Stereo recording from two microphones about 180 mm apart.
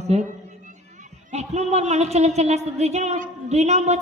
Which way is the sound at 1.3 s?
35° right (ahead or behind).